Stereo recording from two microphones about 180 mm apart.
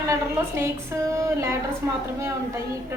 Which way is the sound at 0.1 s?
15° right (ahead or behind).